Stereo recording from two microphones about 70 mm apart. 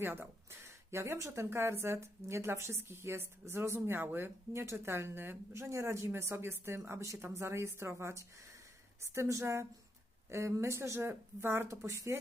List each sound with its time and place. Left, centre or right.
0.0 s speech: right
11.7 s speech: right